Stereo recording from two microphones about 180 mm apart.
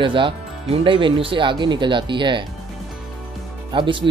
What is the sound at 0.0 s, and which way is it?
Speech, 25° right (ahead or behind).